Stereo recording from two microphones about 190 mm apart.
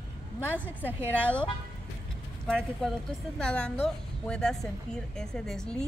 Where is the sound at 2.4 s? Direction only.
5° left (ahead or behind).